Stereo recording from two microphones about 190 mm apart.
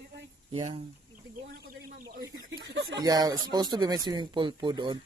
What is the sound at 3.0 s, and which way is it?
Speech, 20° right (ahead or behind).